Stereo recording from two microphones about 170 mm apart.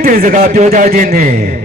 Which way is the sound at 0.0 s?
55° right (ahead or behind).